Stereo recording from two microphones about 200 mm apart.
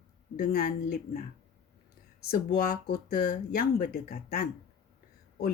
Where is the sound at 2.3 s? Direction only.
50° left (ahead or behind).